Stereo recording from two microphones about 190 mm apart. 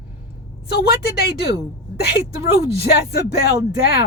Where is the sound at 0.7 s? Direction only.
55° left (ahead or behind).